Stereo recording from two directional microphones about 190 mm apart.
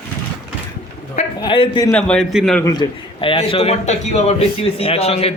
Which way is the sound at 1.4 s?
25° left (ahead or behind).